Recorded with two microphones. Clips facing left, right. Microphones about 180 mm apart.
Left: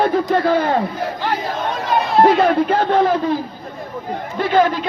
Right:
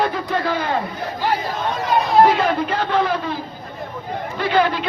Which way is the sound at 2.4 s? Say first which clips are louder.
Left 5 dB; 45° left (ahead or behind).